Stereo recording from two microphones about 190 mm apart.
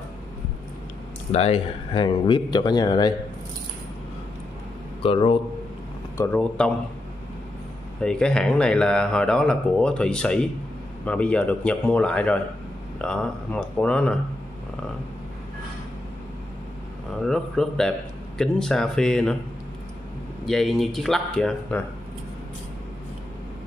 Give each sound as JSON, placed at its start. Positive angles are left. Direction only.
{"t": 1.3, "sound": "speech", "side_deg": 30}
{"t": 5.0, "sound": "speech", "side_deg": 30}
{"t": 6.1, "sound": "a man's voice", "side_deg": 5}
{"t": 8.0, "sound": "a man's voice", "side_deg": 5}
{"t": 17.2, "sound": "speech", "side_deg": 0}
{"t": 20.4, "sound": "speech", "side_deg": 0}